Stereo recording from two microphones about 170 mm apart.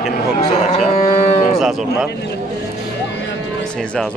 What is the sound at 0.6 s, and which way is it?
Cattle, 40° left (ahead or behind).